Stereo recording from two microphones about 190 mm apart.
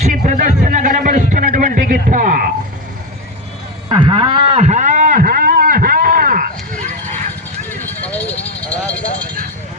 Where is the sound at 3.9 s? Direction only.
25° right (ahead or behind); by 7.1 s 45° right (ahead or behind).